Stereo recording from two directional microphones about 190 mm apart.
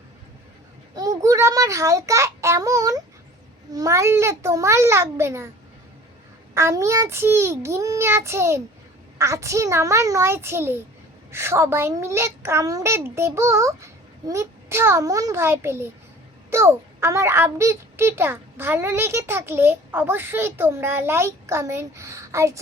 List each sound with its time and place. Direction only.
0.9 s a sound: 20° right (ahead or behind)
3.7 s a child's voice: 20° right (ahead or behind)
6.5 s a child's voice: 15° right (ahead or behind)